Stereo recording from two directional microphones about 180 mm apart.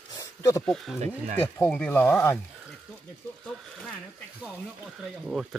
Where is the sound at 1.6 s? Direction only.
10° left (ahead or behind).